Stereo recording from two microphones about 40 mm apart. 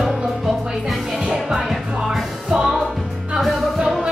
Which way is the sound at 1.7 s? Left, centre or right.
Centre.